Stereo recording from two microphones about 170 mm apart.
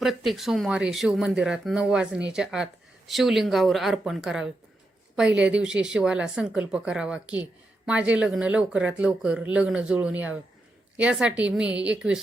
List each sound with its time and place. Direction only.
0.0 s speech: centre (ahead or behind)